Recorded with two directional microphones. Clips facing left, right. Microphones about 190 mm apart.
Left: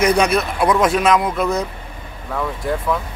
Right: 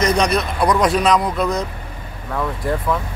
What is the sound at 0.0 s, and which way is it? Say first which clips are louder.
Speech: left 2 dB; 10° left (ahead or behind).